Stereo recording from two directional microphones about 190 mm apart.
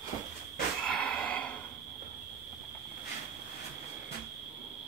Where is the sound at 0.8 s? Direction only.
5° left (ahead or behind).